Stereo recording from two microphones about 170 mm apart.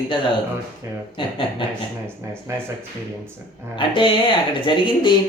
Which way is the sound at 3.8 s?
30° left (ahead or behind).